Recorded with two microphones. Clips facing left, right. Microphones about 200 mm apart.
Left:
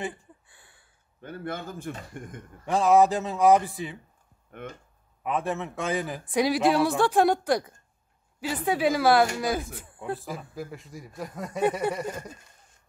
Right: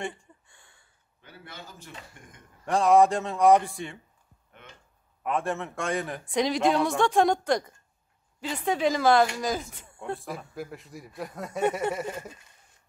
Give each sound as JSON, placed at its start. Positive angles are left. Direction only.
{"t": 0.0, "sound": "a sound", "side_deg": 5}
{"t": 1.2, "sound": "speech", "side_deg": 50}
{"t": 2.6, "sound": "a man's voice", "side_deg": 0}
{"t": 4.5, "sound": "speech", "side_deg": 55}
{"t": 5.2, "sound": "a man's voice", "side_deg": 0}